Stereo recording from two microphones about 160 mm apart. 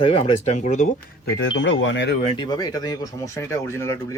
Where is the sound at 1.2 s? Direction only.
90° left.